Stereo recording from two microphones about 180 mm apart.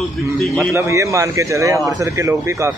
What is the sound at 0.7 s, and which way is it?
A man's voice, 15° right (ahead or behind).